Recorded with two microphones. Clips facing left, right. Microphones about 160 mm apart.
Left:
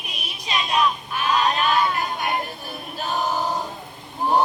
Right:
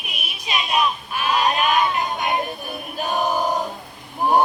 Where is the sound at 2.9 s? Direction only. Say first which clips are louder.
Right 3 dB; 15° right (ahead or behind).